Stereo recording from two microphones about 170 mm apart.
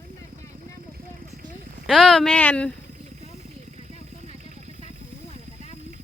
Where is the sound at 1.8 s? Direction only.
Centre (ahead or behind).